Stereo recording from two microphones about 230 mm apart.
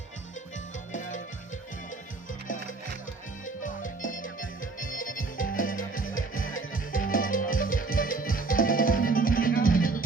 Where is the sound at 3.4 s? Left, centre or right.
Left.